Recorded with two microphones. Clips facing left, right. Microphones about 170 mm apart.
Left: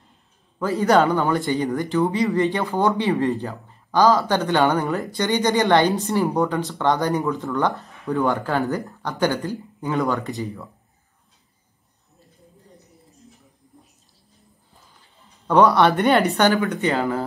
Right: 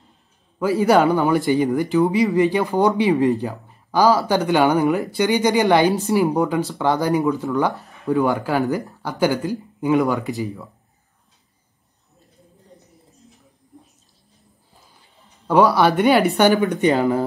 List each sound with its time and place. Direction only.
0.6 s speech: 15° right (ahead or behind)
10.3 s speech: centre (ahead or behind)
15.4 s speech: 5° right (ahead or behind)
16.3 s speech: 15° right (ahead or behind)